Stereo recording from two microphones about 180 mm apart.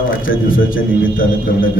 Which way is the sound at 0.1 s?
50° left (ahead or behind).